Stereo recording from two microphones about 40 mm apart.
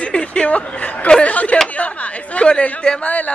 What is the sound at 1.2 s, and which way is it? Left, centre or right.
Chatter, left.